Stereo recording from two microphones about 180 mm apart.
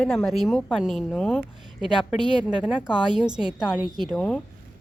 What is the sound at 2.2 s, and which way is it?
Speech, 5° right (ahead or behind).